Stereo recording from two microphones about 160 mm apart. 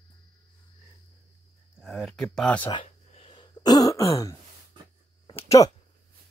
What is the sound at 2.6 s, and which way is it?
Throat clearing, 35° left (ahead or behind).